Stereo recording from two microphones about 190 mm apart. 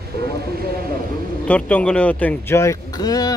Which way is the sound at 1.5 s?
5° left (ahead or behind).